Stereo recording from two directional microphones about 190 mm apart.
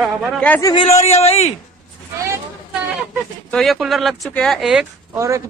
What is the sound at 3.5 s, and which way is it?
Speech, centre (ahead or behind).